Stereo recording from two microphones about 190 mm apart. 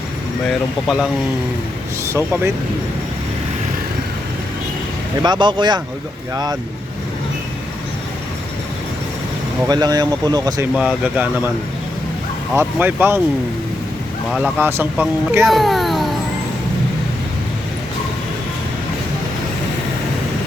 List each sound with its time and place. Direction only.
2.0 s speech: 10° right (ahead or behind)
5.2 s speech: 25° right (ahead or behind)
9.6 s speech: 20° right (ahead or behind)
10.8 s speech: 5° right (ahead or behind)
12.5 s speech: 10° right (ahead or behind)
14.3 s speech: 5° right (ahead or behind)